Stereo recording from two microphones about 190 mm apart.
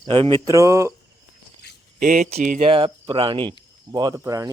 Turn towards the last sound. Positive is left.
turn(degrees=-20)  # may be behind; listen again after turning